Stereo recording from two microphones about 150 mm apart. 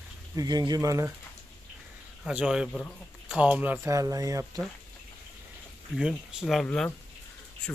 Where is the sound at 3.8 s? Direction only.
20° right (ahead or behind).